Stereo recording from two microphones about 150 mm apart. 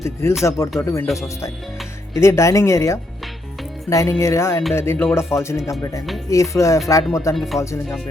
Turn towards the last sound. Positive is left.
turn(degrees=20)  # may be behind; listen again after turning